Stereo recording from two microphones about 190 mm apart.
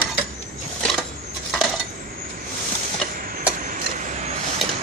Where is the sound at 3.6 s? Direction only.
40° right (ahead or behind).